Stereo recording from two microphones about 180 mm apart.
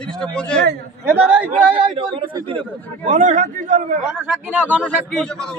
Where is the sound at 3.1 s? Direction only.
45° right (ahead or behind).